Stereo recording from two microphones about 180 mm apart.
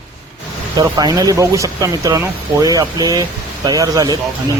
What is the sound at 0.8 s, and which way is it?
Speech, 20° right (ahead or behind).